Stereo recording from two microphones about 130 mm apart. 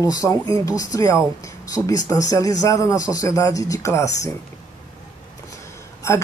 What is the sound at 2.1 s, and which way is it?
Speech, 25° left (ahead or behind).